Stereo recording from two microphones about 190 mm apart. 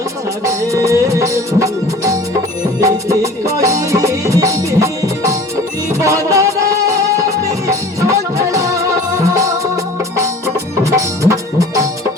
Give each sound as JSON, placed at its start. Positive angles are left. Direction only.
{"t": 0.4, "sound": "music", "side_deg": -15}
{"t": 7.7, "sound": "music", "side_deg": -15}